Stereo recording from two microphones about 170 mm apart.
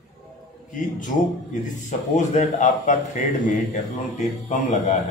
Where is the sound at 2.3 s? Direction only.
45° left (ahead or behind).